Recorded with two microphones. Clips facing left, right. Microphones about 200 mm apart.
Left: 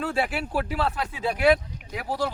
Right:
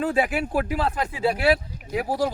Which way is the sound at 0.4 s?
45° right (ahead or behind).